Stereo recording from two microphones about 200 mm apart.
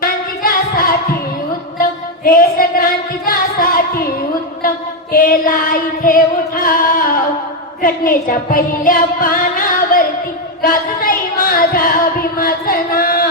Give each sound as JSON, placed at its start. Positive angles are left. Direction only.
{"t": 0.0, "sound": "singing", "side_deg": 45}
{"t": 5.1, "sound": "music", "side_deg": 45}
{"t": 10.6, "sound": "a sound", "side_deg": 45}
{"t": 12.4, "sound": "music", "side_deg": 45}